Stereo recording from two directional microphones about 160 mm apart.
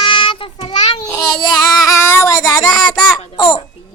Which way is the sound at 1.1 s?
20° left (ahead or behind).